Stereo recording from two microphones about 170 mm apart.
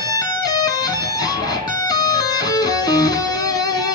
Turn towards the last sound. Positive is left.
turn(degrees=20)  # may be behind; listen again after turning